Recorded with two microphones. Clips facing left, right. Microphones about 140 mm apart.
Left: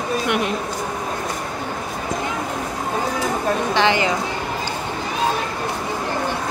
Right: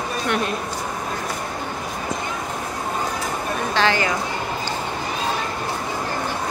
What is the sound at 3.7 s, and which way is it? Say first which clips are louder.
Speech: even; 20° left (ahead or behind).